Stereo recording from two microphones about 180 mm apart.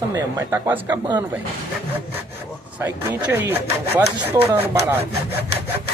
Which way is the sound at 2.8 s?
15° right (ahead or behind).